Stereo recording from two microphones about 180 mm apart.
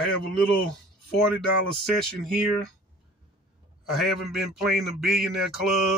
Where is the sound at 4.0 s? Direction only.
Centre (ahead or behind).